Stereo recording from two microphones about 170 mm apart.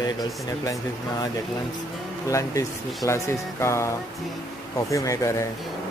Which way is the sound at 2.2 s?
20° left (ahead or behind).